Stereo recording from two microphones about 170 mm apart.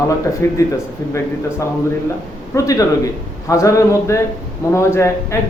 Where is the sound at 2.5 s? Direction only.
20° left (ahead or behind).